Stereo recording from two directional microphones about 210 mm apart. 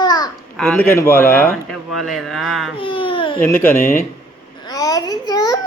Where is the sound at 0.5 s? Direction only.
Centre (ahead or behind).